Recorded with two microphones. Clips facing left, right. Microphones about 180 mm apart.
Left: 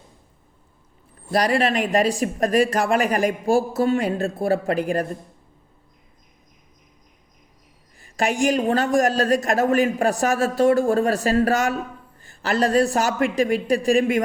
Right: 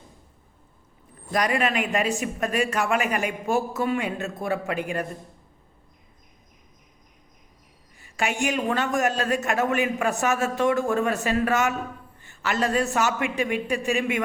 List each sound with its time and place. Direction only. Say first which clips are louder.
1.3 s speech: left 4 dB; 35° left (ahead or behind)
8.0 s speech: left 5 dB; 35° left (ahead or behind)